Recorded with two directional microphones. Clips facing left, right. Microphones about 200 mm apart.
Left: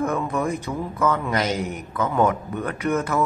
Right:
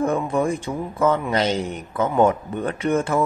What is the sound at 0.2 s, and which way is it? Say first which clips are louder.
A man's voice: right 3 dB; 30° right (ahead or behind).